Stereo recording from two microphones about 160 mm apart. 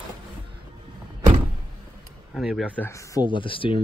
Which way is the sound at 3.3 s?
30° left (ahead or behind).